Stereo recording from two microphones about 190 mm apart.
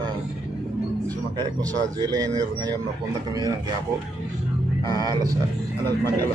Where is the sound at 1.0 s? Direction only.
20° right (ahead or behind).